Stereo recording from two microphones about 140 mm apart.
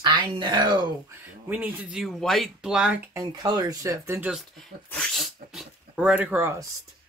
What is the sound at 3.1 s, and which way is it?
Speech, 25° right (ahead or behind).